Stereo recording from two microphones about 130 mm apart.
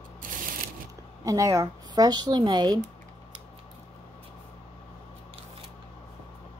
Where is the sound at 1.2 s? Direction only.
25° right (ahead or behind).